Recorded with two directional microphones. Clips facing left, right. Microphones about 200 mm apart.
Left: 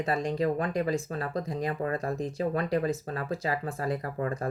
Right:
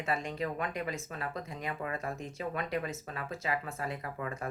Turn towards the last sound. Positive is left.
turn(degrees=35)  # may be behind; listen again after turning